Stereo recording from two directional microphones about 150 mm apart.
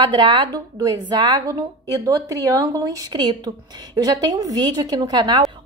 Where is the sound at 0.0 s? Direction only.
30° right (ahead or behind).